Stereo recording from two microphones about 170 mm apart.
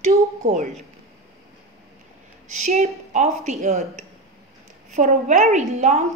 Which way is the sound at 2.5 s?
40° right (ahead or behind).